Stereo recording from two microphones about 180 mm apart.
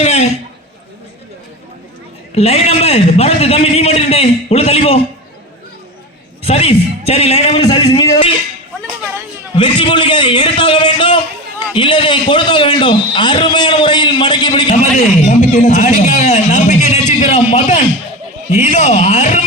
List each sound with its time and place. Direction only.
0.0 s a sound: 35° left (ahead or behind)
2.3 s a man's voice: 35° left (ahead or behind)
6.4 s a man's voice: 35° left (ahead or behind)
9.6 s a man's voice: 25° left (ahead or behind)
14.9 s a man's voice: 40° left (ahead or behind)